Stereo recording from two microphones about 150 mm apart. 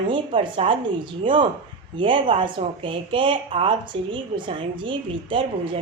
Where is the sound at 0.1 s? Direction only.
35° right (ahead or behind).